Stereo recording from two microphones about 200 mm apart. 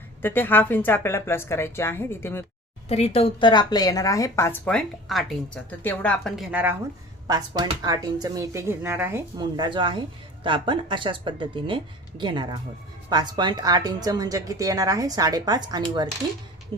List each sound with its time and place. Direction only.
0.2 s a woman's voice: 10° left (ahead or behind)
2.9 s a woman's voice: 30° left (ahead or behind); by 6.7 s 10° right (ahead or behind)
7.3 s speech: 20° right (ahead or behind)